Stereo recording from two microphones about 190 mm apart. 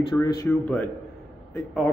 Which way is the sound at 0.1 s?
20° left (ahead or behind).